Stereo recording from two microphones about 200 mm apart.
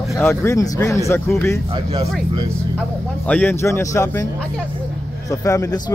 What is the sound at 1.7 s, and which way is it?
Speech, 30° right (ahead or behind).